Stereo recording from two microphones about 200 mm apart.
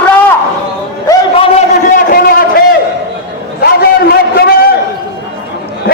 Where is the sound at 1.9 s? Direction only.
50° left (ahead or behind).